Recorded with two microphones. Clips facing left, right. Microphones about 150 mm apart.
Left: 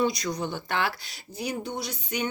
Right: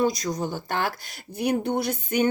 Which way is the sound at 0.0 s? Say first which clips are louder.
Right 2 dB; 45° right (ahead or behind).